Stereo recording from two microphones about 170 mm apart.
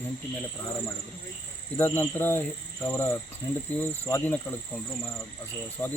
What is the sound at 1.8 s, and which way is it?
Speech, 15° left (ahead or behind).